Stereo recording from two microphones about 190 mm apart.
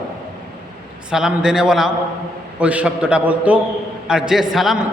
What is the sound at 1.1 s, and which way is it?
A man's voice, 5° right (ahead or behind).